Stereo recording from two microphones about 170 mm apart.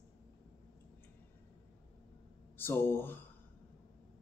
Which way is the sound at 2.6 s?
15° left (ahead or behind).